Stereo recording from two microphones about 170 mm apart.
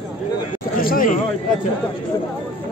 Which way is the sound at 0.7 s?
55° left (ahead or behind).